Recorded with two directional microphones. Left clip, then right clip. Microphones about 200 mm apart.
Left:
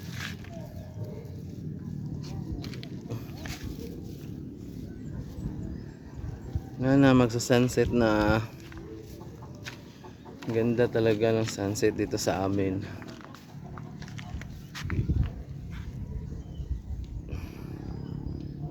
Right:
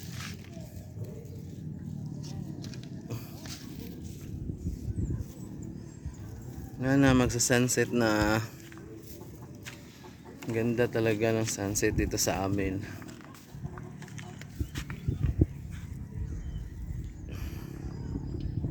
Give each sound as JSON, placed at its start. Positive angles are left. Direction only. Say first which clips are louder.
{"t": 3.7, "sound": "a sound", "louder": "left 4 dB", "side_deg": 55}
{"t": 6.7, "sound": "speech", "louder": "left 3 dB", "side_deg": 0}
{"t": 10.4, "sound": "speech", "louder": "left 3 dB", "side_deg": -5}